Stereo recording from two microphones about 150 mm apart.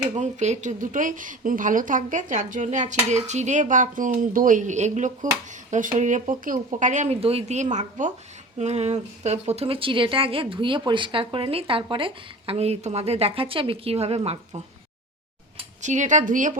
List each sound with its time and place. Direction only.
0.2 s speech: 50° right (ahead or behind)
15.8 s speech: 55° right (ahead or behind)